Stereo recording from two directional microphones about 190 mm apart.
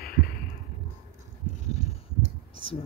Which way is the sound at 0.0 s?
50° left (ahead or behind).